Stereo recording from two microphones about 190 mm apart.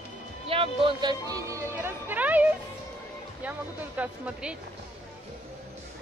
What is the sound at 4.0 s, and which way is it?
Speech, 5° right (ahead or behind).